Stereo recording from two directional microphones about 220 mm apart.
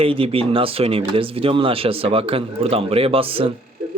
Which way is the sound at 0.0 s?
25° right (ahead or behind).